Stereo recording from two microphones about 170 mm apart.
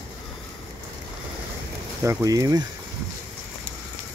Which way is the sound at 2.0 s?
20° right (ahead or behind).